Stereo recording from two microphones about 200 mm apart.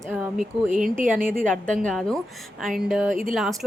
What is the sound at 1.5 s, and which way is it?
Speech, 5° left (ahead or behind).